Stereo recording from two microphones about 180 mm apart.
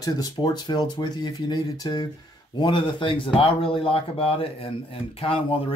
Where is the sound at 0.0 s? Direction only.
20° left (ahead or behind).